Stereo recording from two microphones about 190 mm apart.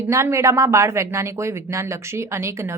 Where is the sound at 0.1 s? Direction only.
15° right (ahead or behind).